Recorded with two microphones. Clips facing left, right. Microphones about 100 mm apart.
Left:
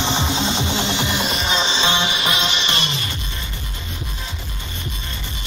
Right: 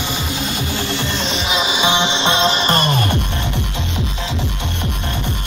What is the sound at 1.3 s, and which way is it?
Music, centre (ahead or behind).